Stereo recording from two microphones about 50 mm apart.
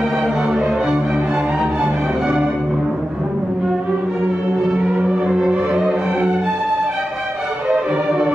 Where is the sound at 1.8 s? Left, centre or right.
Centre.